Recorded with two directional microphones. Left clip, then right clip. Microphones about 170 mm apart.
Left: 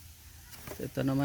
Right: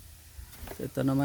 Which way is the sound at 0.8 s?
15° right (ahead or behind).